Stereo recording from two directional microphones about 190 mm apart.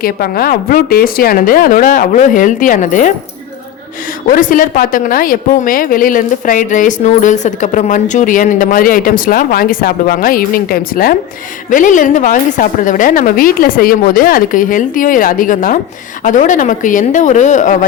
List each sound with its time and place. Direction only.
0.0 s a woman's voice: 55° left (ahead or behind)
4.3 s a woman's voice: 45° left (ahead or behind)